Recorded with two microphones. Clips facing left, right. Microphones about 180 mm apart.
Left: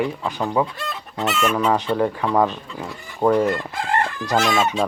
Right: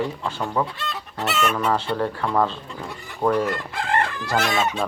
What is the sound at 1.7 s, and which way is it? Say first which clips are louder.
Speech: left 3 dB; 15° left (ahead or behind).